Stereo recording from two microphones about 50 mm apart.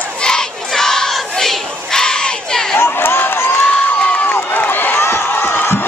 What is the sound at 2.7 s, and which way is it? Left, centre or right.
Run, left.